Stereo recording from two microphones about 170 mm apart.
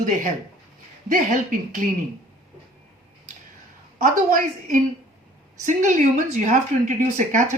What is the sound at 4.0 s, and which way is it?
Speech, 50° right (ahead or behind).